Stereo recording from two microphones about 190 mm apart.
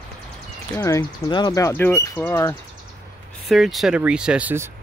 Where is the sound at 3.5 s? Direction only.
Centre (ahead or behind).